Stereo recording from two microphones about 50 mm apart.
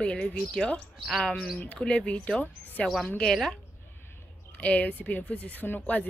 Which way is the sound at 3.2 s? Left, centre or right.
Centre.